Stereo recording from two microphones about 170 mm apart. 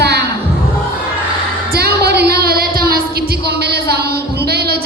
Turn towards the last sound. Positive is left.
turn(degrees=-70)  # may be behind; listen again after turning